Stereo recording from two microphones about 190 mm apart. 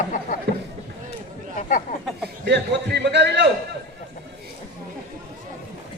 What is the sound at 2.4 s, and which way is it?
A man's voice, 65° right (ahead or behind).